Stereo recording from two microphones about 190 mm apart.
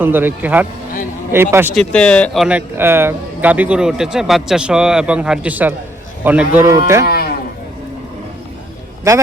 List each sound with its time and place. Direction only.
0.0 s speech: 10° right (ahead or behind)
1.7 s speech: 5° left (ahead or behind); by 7.0 s 15° right (ahead or behind)
7.0 s music: 55° left (ahead or behind)
9.1 s speech: 15° right (ahead or behind)